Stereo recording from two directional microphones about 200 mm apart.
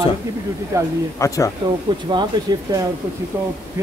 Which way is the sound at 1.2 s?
15° left (ahead or behind).